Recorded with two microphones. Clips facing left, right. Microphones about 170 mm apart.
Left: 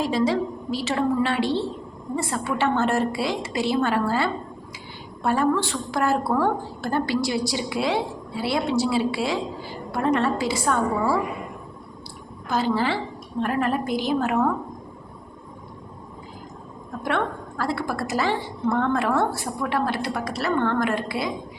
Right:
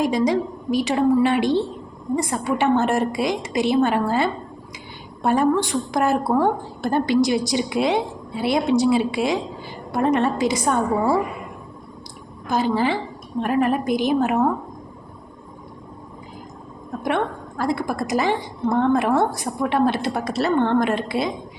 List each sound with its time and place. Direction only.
0.0 s a woman's voice: 15° right (ahead or behind)
12.5 s a woman's voice: 15° right (ahead or behind)
17.0 s a woman's voice: 15° right (ahead or behind)